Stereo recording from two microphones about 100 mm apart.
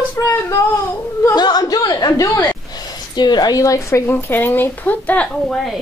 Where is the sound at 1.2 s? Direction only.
45° left (ahead or behind).